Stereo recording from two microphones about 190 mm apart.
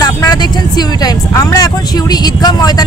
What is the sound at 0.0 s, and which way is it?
Speech, 20° left (ahead or behind).